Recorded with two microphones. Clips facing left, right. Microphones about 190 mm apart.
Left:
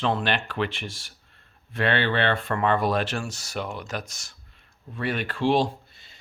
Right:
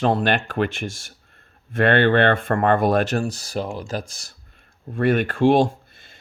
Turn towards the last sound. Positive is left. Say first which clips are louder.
# right 1 dB
turn(degrees=-50)  # may be behind; listen again after turning